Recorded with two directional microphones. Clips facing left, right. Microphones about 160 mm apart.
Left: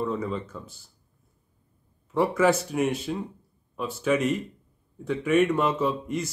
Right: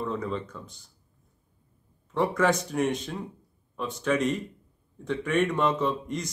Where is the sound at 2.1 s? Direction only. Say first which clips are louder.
Left 3 dB; 5° left (ahead or behind).